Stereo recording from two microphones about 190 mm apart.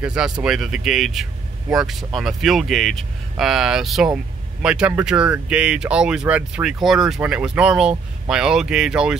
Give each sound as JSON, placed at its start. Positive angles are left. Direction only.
{"t": 0.0, "sound": "speech", "side_deg": -5}